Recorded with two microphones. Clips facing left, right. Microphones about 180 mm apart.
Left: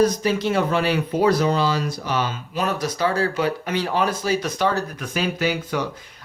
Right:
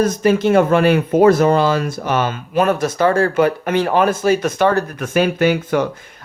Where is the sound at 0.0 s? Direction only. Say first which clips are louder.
Right 4 dB; 50° right (ahead or behind).